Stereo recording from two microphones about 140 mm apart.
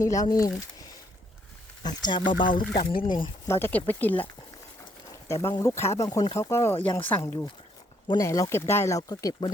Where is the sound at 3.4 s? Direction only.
15° left (ahead or behind).